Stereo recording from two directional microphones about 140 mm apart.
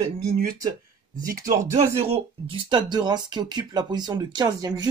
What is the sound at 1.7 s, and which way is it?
Speech, 45° right (ahead or behind).